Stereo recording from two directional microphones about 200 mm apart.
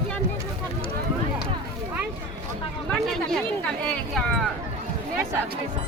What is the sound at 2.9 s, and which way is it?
Speech, 5° left (ahead or behind).